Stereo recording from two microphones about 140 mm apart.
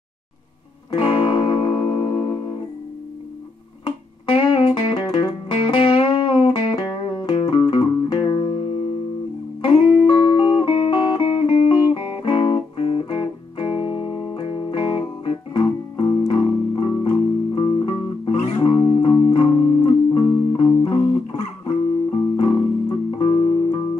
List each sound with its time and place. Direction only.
0.9 s music: 40° left (ahead or behind)
3.8 s music: 40° left (ahead or behind)
10.0 s music: 35° left (ahead or behind)